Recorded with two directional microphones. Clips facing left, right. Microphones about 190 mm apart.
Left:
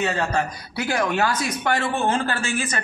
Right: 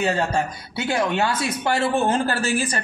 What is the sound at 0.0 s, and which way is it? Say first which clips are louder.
A man's voice: right 1 dB; 30° right (ahead or behind).